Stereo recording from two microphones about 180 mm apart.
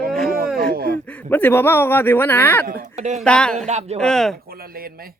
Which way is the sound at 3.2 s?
5° left (ahead or behind).